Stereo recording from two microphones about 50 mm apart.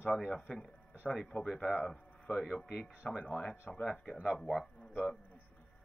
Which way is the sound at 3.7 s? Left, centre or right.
Centre.